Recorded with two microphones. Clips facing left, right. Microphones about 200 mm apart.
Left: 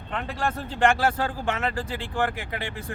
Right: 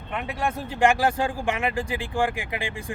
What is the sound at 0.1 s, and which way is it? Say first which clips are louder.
Speech: right 1 dB; 10° right (ahead or behind).